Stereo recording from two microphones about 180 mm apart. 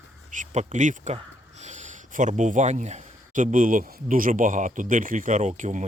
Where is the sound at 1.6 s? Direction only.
40° right (ahead or behind).